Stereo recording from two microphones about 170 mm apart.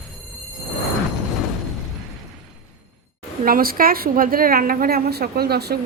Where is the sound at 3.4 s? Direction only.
60° right (ahead or behind).